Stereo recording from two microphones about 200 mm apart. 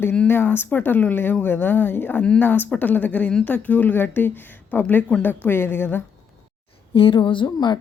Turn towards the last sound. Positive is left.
turn(degrees=20)  # may be behind; listen again after turning